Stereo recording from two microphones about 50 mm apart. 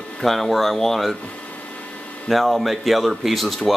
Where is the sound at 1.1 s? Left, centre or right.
Left.